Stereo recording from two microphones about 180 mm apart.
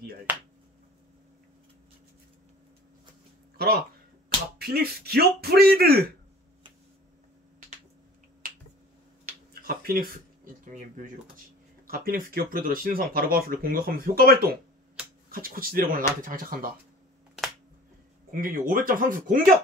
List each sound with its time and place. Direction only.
3.5 s speech: 60° right (ahead or behind)
9.5 s a sound: 55° right (ahead or behind)
11.9 s speech: 55° right (ahead or behind)
18.3 s speech: 50° right (ahead or behind)